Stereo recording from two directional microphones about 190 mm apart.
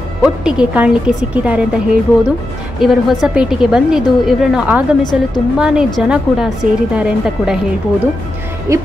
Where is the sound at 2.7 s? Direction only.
Centre (ahead or behind).